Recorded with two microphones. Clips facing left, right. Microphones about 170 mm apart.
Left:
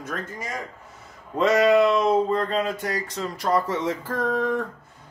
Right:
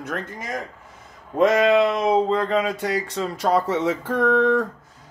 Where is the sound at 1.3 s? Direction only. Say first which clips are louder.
Right 1 dB; 55° right (ahead or behind).